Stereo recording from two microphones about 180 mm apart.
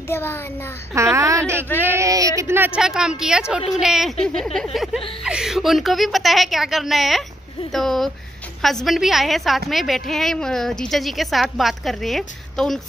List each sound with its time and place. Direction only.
0.1 s a child's voice: 15° left (ahead or behind)
0.9 s a woman's voice: 15° right (ahead or behind); by 12.8 s centre (ahead or behind)